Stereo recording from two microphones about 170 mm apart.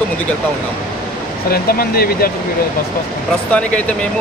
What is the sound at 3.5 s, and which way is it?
Speech, 5° left (ahead or behind).